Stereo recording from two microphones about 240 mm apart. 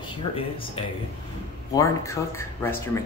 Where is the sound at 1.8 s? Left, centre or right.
Centre.